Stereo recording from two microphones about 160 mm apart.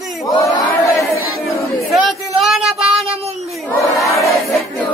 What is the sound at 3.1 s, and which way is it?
Child singing, 40° right (ahead or behind).